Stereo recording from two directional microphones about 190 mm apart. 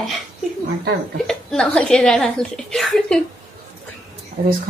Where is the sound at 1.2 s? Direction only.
5° left (ahead or behind).